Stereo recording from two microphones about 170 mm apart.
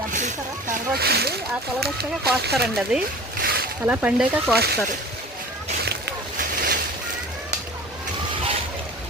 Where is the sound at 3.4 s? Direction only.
65° right (ahead or behind).